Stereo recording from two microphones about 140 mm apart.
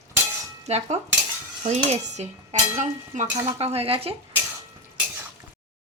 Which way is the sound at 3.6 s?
45° right (ahead or behind).